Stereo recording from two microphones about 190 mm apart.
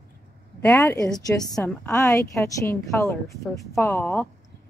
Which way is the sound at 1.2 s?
20° left (ahead or behind).